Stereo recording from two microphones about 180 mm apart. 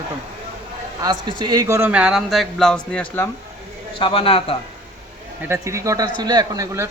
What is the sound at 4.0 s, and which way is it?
Speech, 30° left (ahead or behind).